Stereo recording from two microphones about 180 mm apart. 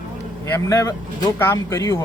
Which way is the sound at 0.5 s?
15° left (ahead or behind).